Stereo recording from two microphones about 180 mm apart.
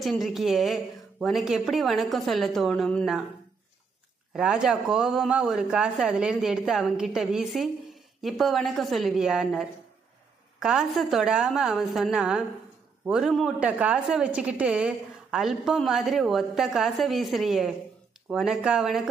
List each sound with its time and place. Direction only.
0.0 s speech: centre (ahead or behind)
4.3 s speech: 5° right (ahead or behind)